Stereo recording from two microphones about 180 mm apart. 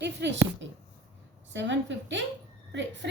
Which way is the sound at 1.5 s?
90° right.